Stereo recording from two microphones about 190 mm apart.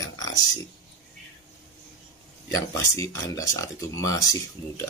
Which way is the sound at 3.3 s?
15° left (ahead or behind).